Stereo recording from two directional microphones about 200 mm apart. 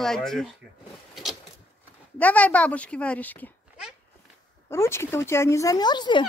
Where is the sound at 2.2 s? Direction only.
5° left (ahead or behind).